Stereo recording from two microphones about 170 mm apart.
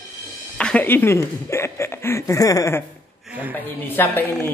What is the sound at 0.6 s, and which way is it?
Speech, 10° left (ahead or behind).